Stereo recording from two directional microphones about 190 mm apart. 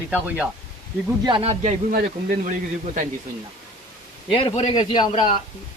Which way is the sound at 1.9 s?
50° right (ahead or behind).